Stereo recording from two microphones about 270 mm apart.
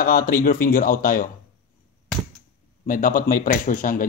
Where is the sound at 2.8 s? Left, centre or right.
Left.